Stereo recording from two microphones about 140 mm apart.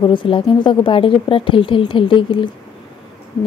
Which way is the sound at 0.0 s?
35° left (ahead or behind).